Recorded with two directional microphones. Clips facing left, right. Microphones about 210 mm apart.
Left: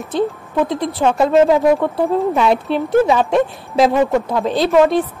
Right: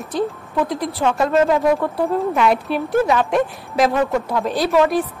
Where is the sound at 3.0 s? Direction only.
25° left (ahead or behind).